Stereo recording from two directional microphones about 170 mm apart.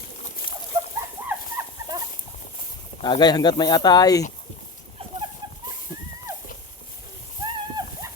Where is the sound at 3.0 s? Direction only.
25° left (ahead or behind).